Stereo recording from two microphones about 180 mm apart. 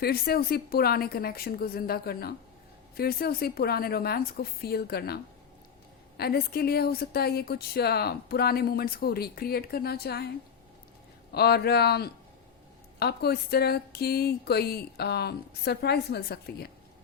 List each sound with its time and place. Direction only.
0.0 s speech: 60° left (ahead or behind)
11.3 s speech: 65° left (ahead or behind)